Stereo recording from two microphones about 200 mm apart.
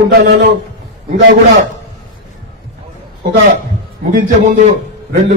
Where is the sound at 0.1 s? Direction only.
55° right (ahead or behind).